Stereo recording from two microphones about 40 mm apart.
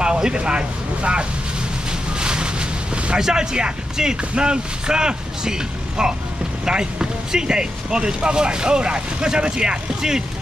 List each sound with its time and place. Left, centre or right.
0.0 s speech: right
1.9 s boat: right
3.2 s speech: centre